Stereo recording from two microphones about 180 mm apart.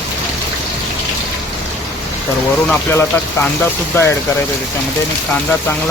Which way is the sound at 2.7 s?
5° left (ahead or behind).